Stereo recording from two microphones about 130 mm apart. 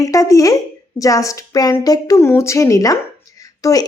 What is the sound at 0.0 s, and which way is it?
A woman's voice, 25° left (ahead or behind).